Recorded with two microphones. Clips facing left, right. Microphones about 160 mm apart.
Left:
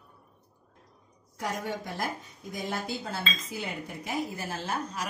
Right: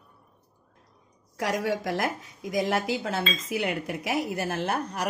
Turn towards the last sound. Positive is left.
turn(degrees=-65)  # may be behind; listen again after turning